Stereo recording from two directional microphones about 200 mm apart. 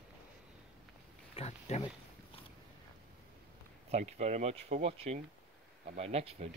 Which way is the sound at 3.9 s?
35° right (ahead or behind).